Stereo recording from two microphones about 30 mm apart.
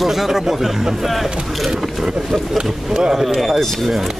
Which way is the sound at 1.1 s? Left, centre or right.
Centre.